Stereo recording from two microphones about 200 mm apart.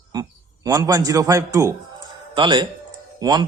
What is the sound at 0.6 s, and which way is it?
A man's voice, 15° right (ahead or behind).